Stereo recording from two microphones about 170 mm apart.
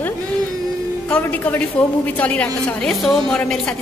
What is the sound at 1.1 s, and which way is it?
A woman's voice, 10° left (ahead or behind).